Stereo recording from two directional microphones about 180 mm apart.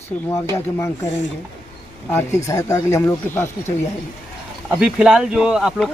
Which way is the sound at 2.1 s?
15° left (ahead or behind).